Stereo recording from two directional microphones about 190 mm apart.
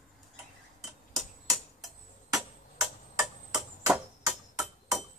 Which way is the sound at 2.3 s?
15° right (ahead or behind).